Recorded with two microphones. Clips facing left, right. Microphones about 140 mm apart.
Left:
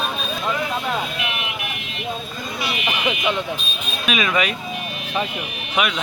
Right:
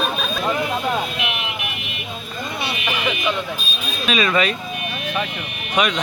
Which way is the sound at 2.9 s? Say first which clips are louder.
Even; 15° left (ahead or behind).